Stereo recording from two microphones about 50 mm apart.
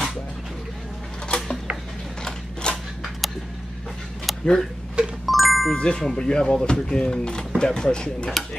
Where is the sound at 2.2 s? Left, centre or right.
Centre.